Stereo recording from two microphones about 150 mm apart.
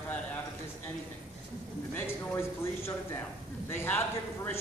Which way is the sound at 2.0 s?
15° left (ahead or behind).